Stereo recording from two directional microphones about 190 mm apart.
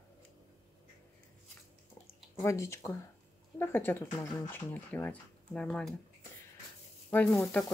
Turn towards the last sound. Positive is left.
turn(degrees=10)  # may be behind; listen again after turning